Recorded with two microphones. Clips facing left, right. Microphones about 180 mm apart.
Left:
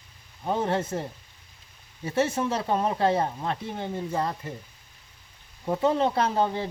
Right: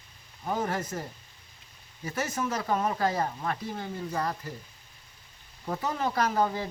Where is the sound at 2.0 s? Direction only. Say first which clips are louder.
Left 6 dB; 30° left (ahead or behind).